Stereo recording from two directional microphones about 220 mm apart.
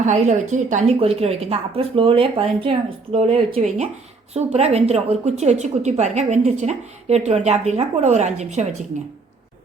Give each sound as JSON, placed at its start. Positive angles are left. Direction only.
{"t": 0.0, "sound": "a woman's voice", "side_deg": -35}